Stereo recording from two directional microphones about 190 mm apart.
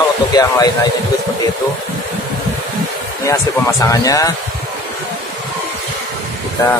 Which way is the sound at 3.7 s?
15° left (ahead or behind).